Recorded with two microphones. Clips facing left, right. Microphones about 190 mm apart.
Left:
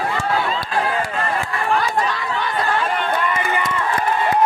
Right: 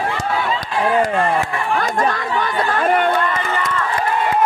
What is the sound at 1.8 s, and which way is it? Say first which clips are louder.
Chatter: right 2 dB; 50° right (ahead or behind).